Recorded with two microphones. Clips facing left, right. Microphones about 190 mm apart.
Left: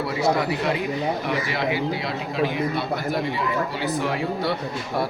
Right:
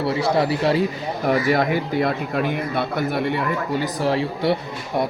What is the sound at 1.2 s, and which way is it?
A man's voice, 45° right (ahead or behind).